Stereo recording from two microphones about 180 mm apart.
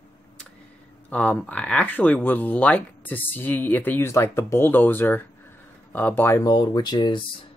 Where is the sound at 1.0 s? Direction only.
5° left (ahead or behind); by 7.2 s 25° left (ahead or behind).